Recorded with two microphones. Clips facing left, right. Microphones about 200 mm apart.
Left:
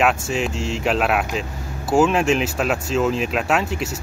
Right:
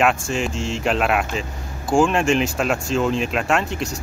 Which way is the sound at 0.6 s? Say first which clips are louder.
Even; centre (ahead or behind).